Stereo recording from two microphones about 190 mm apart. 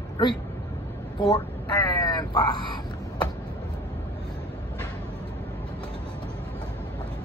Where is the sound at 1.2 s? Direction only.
20° left (ahead or behind).